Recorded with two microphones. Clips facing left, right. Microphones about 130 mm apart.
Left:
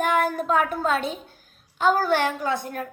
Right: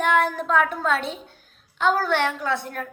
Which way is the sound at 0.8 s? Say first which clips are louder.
Even; 45° left (ahead or behind).